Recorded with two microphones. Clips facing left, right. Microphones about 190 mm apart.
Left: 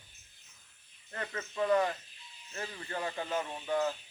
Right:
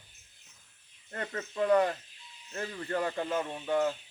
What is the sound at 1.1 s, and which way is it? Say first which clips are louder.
Speech: right 3 dB; 40° right (ahead or behind).